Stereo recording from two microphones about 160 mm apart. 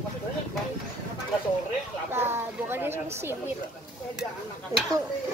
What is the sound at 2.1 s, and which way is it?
Speech, 15° right (ahead or behind).